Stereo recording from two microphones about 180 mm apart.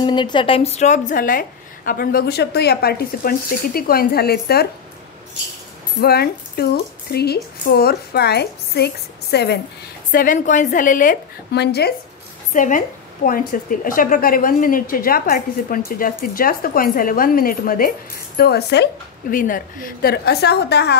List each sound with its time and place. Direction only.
0.0 s a woman's voice: 25° left (ahead or behind); by 4.6 s 60° left (ahead or behind)
5.9 s speech: 60° left (ahead or behind)
10.1 s a woman's voice: 45° left (ahead or behind)
11.5 s speech: 65° left (ahead or behind)
12.5 s a woman's voice: 45° left (ahead or behind); by 18.9 s 65° left (ahead or behind)
19.3 s speech: 50° left (ahead or behind); by 20.9 s 65° left (ahead or behind)